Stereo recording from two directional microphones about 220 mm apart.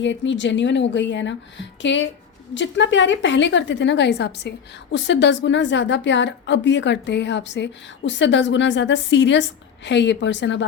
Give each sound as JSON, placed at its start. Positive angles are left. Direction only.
{"t": 0.0, "sound": "a woman's voice", "side_deg": 55}